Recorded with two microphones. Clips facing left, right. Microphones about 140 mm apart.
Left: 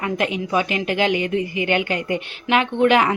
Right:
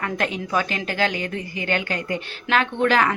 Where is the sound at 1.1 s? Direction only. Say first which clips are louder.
Left 7 dB; 40° right (ahead or behind).